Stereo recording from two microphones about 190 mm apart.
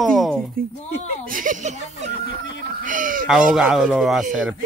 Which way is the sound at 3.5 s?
Centre (ahead or behind).